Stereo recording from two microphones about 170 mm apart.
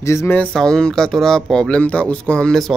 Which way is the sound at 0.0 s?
15° left (ahead or behind).